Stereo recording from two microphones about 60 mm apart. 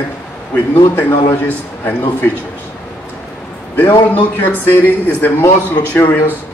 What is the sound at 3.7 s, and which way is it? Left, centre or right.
A man's voice, left.